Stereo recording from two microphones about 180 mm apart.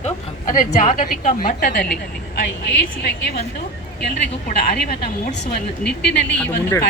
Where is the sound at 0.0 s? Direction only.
50° left (ahead or behind).